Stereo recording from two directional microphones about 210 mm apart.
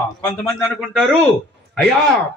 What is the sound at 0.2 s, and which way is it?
Speech, 10° left (ahead or behind).